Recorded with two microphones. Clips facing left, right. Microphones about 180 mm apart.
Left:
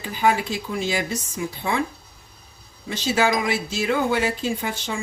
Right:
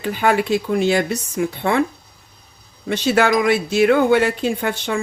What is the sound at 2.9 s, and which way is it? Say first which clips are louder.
Speech: right 5 dB; 65° right (ahead or behind).